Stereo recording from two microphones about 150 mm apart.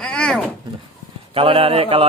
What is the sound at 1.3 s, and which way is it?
Speech, 40° right (ahead or behind).